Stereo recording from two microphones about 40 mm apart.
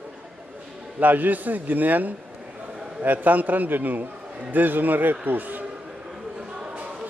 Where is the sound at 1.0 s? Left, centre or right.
Right.